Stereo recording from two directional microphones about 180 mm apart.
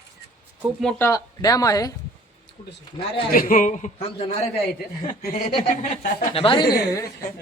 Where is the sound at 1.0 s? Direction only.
20° left (ahead or behind).